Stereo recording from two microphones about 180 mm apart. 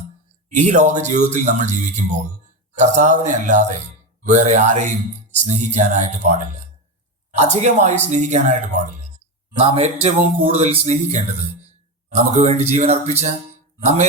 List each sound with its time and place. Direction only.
0.5 s speech: 40° right (ahead or behind)